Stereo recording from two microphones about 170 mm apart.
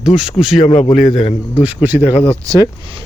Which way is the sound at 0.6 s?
40° left (ahead or behind).